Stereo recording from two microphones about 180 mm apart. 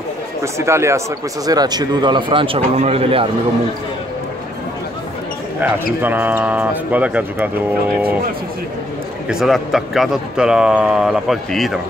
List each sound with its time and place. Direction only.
0.4 s speech: 15° right (ahead or behind); by 3.3 s 30° right (ahead or behind)
6.0 s speech: 10° right (ahead or behind)
9.3 s a man's voice: centre (ahead or behind)